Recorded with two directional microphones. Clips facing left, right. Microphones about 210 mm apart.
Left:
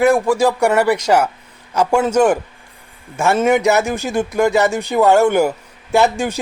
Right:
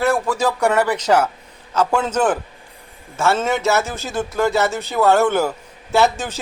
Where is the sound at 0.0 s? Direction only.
10° left (ahead or behind).